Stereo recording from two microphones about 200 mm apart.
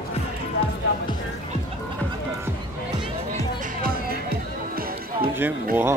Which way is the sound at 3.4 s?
45° right (ahead or behind).